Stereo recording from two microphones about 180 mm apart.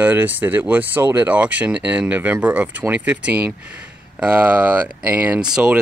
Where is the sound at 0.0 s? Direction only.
10° right (ahead or behind).